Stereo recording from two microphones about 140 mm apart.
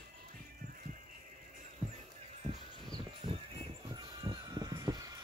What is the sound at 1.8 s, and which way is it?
Music, 50° right (ahead or behind).